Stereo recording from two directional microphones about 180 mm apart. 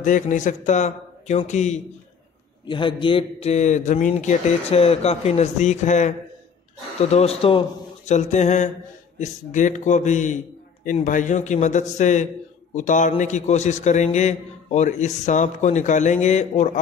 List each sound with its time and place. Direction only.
0.0 s a man's voice: 45° left (ahead or behind)
2.7 s a man's voice: 25° left (ahead or behind)